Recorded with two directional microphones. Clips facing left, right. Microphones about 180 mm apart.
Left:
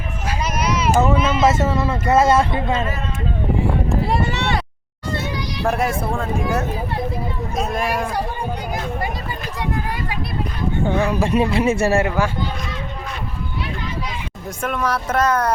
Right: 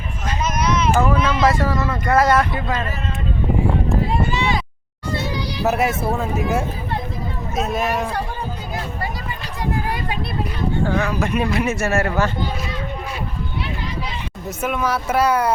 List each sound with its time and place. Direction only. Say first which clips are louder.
0.3 s a sound: right 1 dB; 10° left (ahead or behind)
0.9 s speech: left 4 dB; 25° left (ahead or behind)
1.2 s speech: left 1 dB; 5° left (ahead or behind)
1.5 s speech: left 1 dB; 25° left (ahead or behind)
4.1 s a sound: even; 70° left (ahead or behind)
5.6 s speech: right 1 dB; 5° right (ahead or behind)
7.9 s speech: even; 10° left (ahead or behind)
10.8 s speech: left 5 dB; 30° left (ahead or behind)
12.0 s speech: even; 10° left (ahead or behind)
14.6 s speech: even; 5° right (ahead or behind)